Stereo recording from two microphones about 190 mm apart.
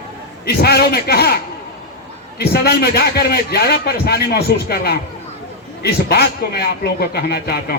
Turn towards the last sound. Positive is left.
turn(degrees=55)  # may be behind; listen again after turning